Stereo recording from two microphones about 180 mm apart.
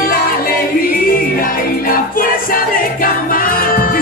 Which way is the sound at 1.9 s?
50° left (ahead or behind).